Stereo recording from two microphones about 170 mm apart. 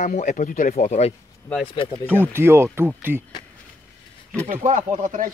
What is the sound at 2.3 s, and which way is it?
Speech, 15° right (ahead or behind).